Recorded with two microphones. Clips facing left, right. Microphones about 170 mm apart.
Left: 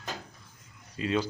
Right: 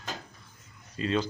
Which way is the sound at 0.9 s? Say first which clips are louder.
Even; 10° left (ahead or behind).